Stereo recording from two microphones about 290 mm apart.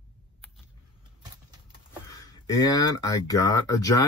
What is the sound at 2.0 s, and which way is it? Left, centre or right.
Speech, centre.